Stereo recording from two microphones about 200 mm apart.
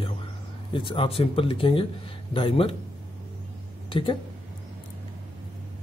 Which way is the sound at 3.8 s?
25° left (ahead or behind).